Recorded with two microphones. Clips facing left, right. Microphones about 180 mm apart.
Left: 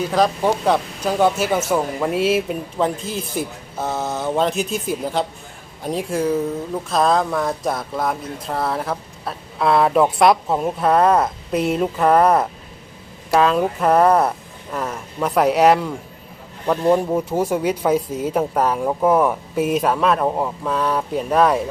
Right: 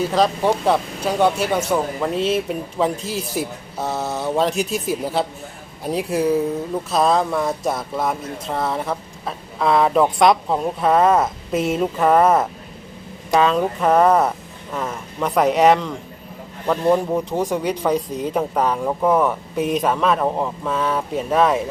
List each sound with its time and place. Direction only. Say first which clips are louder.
0.1 s speech: even; centre (ahead or behind)